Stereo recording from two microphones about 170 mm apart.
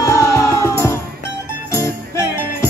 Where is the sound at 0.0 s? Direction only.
20° left (ahead or behind).